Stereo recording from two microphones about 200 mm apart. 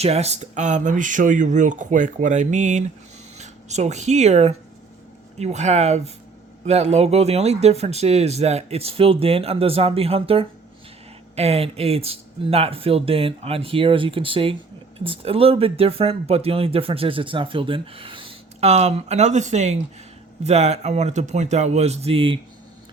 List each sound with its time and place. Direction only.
0.0 s speech: 30° right (ahead or behind)